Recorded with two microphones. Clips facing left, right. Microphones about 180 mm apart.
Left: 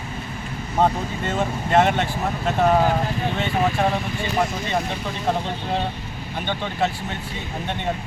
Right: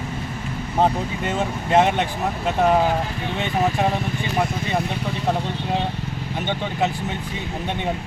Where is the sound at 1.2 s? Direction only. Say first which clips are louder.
Left 2 dB; 15° right (ahead or behind).